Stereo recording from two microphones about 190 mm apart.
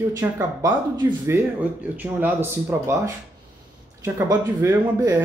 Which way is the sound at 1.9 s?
10° right (ahead or behind).